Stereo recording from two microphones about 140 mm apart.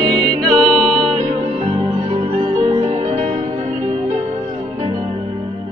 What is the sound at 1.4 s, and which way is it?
Music, 45° right (ahead or behind).